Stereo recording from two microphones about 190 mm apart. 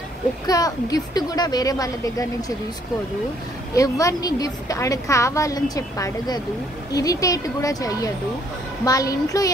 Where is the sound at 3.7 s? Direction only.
15° left (ahead or behind).